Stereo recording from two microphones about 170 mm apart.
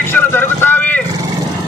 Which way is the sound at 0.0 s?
15° left (ahead or behind).